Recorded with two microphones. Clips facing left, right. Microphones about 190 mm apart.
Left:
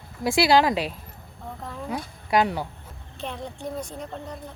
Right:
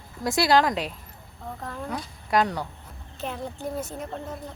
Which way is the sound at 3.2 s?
5° right (ahead or behind).